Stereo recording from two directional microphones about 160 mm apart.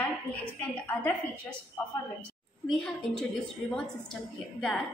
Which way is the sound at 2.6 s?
5° left (ahead or behind).